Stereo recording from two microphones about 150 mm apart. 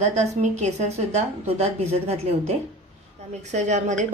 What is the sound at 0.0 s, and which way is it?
A woman's voice, 50° right (ahead or behind).